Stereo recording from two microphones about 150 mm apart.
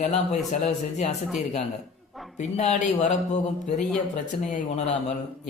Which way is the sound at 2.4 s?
50° left (ahead or behind).